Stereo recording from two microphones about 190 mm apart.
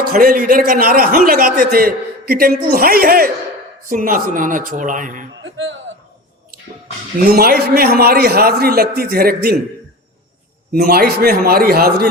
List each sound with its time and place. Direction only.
0.1 s a man's voice: 50° right (ahead or behind)
7.3 s a man's voice: 50° right (ahead or behind)
10.7 s a man's voice: 50° right (ahead or behind)